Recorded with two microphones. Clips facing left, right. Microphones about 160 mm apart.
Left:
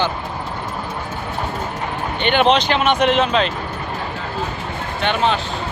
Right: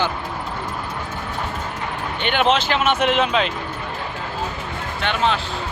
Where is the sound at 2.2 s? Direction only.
5° right (ahead or behind).